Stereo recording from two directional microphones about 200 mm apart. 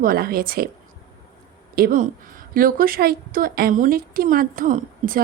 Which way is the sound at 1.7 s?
45° right (ahead or behind).